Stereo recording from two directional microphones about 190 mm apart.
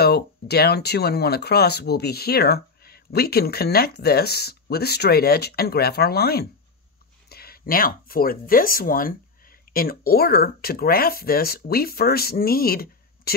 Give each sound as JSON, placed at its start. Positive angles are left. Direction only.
{"t": 0.0, "sound": "speech", "side_deg": 55}